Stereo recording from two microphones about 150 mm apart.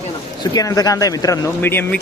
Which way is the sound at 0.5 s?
25° left (ahead or behind).